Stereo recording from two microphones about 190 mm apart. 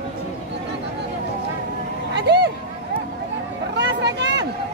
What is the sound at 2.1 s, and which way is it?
Vehicle, 60° right (ahead or behind).